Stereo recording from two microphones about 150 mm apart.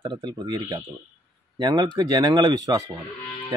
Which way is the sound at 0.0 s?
30° right (ahead or behind).